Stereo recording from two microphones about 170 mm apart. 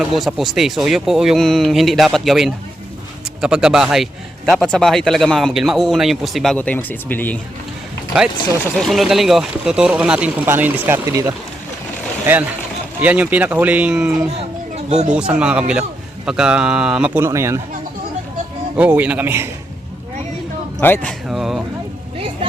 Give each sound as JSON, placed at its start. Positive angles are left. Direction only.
{"t": 0.0, "sound": "a man's voice", "side_deg": 0}
{"t": 8.8, "sound": "speech", "side_deg": 0}
{"t": 14.8, "sound": "speech", "side_deg": -40}
{"t": 15.1, "sound": "a man's voice", "side_deg": -5}
{"t": 18.8, "sound": "speech", "side_deg": -10}
{"t": 20.7, "sound": "speech", "side_deg": 10}
{"t": 21.2, "sound": "a man's voice", "side_deg": 0}